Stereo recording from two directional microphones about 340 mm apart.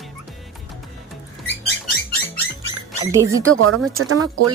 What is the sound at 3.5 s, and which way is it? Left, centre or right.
Speech, right.